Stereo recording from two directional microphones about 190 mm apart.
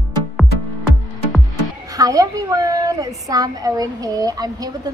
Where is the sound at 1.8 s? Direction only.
20° right (ahead or behind).